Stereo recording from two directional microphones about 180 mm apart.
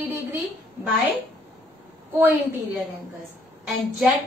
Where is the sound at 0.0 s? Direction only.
10° right (ahead or behind).